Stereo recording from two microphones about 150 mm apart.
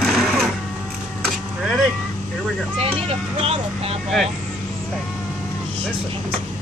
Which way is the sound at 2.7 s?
40° right (ahead or behind).